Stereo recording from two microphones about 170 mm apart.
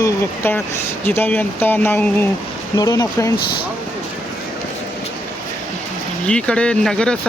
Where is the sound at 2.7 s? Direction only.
20° left (ahead or behind).